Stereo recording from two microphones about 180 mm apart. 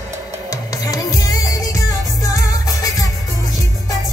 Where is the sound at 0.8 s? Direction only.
20° left (ahead or behind).